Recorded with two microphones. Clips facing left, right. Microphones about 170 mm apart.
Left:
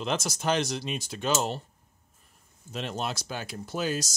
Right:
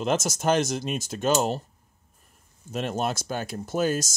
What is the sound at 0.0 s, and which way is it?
Speech, 45° right (ahead or behind).